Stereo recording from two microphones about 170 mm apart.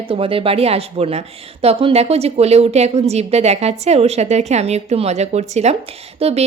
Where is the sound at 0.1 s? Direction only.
35° right (ahead or behind).